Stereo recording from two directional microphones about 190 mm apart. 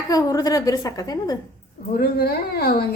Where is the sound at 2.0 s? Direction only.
55° left (ahead or behind).